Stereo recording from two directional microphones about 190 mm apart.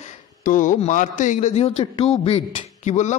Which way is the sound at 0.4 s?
45° left (ahead or behind).